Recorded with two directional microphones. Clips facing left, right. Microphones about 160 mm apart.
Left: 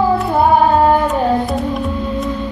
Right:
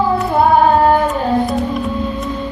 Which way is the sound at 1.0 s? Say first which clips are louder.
Even; centre (ahead or behind).